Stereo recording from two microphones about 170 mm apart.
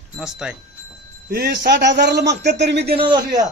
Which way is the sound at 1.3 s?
65° right (ahead or behind).